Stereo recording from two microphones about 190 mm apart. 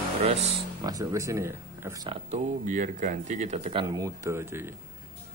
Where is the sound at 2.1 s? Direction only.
40° right (ahead or behind).